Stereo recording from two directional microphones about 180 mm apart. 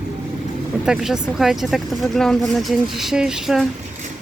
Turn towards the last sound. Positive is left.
turn(degrees=0)  # may be behind; listen again after turning